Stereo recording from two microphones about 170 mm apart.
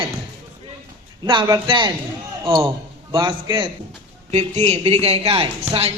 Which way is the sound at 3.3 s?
25° right (ahead or behind).